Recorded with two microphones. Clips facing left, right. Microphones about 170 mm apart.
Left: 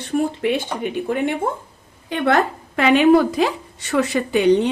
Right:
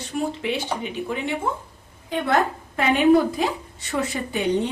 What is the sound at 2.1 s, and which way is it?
A woman's voice, 75° left (ahead or behind).